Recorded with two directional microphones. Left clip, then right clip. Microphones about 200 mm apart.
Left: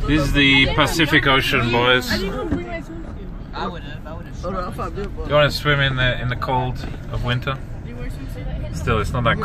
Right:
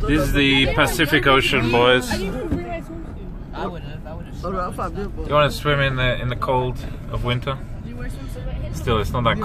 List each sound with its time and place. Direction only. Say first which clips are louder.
0.1 s speech: left 2 dB; 5° right (ahead or behind)
4.4 s speech: right 1 dB; 45° right (ahead or behind)
5.3 s speech: left 1 dB; 5° right (ahead or behind)
8.8 s speech: even; 5° right (ahead or behind)